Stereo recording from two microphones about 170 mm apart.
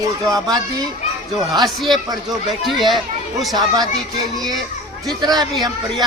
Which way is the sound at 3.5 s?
25° right (ahead or behind).